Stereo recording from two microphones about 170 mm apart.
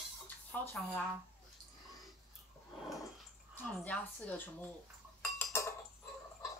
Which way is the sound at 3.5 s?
10° left (ahead or behind).